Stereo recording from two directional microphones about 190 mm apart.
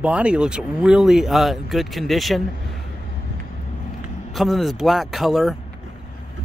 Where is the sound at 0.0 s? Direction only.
5° right (ahead or behind).